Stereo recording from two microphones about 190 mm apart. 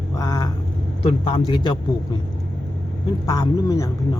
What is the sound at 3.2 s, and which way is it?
Speech, 20° left (ahead or behind).